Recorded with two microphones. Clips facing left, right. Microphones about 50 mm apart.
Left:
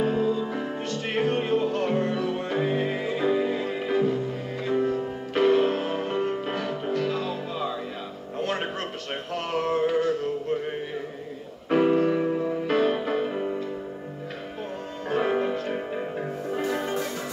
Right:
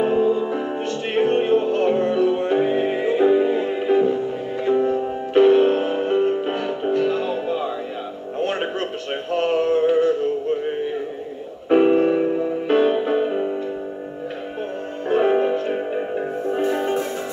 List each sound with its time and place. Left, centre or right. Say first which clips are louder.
0.0 s music: right 6 dB; right
8.4 s a sound: right 5 dB; right
11.7 s music: right 5 dB; right
15.0 s music: right 7 dB; right